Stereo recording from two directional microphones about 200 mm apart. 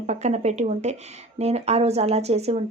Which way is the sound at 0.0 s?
35° right (ahead or behind).